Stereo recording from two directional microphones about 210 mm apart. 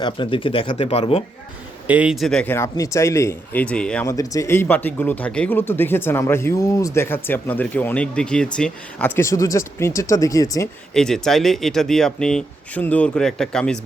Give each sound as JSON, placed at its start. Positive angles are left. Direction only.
{"t": 0.0, "sound": "speech", "side_deg": 25}
{"t": 1.9, "sound": "speech", "side_deg": -5}
{"t": 4.1, "sound": "speech", "side_deg": 15}
{"t": 10.9, "sound": "speech", "side_deg": 5}